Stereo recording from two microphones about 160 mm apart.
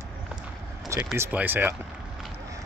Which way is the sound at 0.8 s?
15° right (ahead or behind).